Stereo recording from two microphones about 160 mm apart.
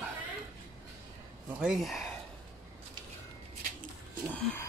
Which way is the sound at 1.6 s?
Centre (ahead or behind).